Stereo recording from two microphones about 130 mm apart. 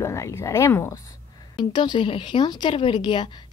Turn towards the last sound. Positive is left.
turn(degrees=35)  # may be behind; listen again after turning